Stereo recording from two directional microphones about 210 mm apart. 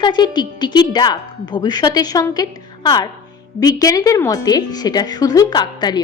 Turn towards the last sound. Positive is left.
turn(degrees=20)  # may be behind; listen again after turning